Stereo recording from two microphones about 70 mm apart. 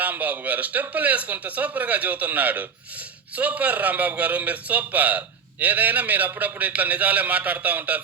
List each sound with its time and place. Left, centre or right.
0.0 s a man's voice: right